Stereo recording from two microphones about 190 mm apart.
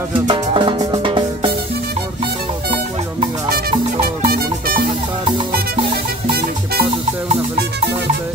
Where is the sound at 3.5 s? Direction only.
50° right (ahead or behind).